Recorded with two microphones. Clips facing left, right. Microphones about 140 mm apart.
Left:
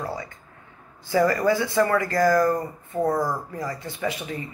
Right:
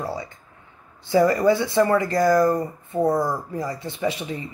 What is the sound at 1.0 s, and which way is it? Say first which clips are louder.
Speech: right 3 dB; 25° right (ahead or behind).